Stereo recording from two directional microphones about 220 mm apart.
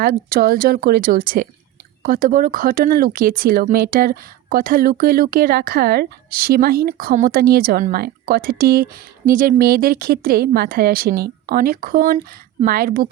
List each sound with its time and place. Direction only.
0.0 s speech: 40° right (ahead or behind)